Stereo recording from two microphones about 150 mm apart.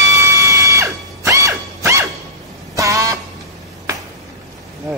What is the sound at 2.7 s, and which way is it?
Vehicle horn, 20° right (ahead or behind).